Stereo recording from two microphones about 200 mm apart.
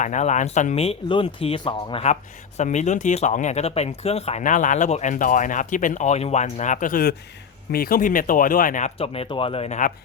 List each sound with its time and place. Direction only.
0.0 s speech: 35° left (ahead or behind)